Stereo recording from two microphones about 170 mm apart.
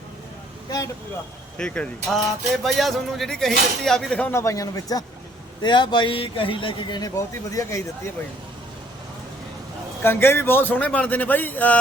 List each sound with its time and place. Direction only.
1.5 s a man's voice: 5° left (ahead or behind)
10.0 s a man's voice: 15° left (ahead or behind)